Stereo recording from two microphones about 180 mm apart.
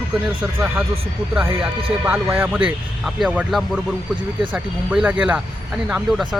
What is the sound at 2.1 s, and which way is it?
A man's voice, 10° right (ahead or behind).